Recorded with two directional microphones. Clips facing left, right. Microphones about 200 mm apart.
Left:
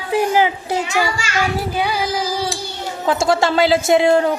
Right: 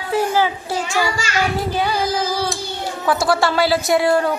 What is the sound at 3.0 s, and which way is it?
Speech, 20° left (ahead or behind).